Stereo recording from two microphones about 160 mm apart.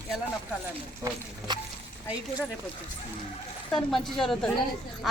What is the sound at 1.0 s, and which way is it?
Speech, 20° right (ahead or behind).